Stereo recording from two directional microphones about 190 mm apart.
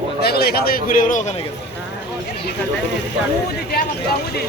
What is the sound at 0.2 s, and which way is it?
A man's voice, 55° left (ahead or behind).